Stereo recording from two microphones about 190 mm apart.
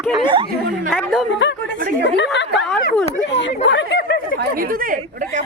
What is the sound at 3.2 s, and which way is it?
Speech, 70° left (ahead or behind).